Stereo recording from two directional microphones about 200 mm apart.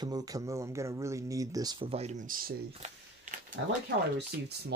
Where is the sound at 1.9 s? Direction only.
30° right (ahead or behind).